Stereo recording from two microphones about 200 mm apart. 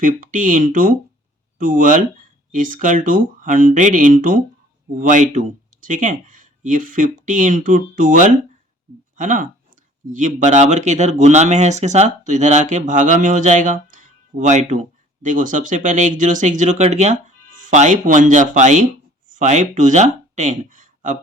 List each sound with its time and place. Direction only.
0.0 s speech: 40° right (ahead or behind)